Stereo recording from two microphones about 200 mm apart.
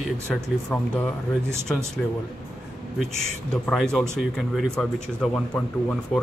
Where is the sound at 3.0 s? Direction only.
Centre (ahead or behind).